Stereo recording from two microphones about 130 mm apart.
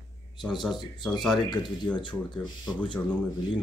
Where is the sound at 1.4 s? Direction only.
35° left (ahead or behind).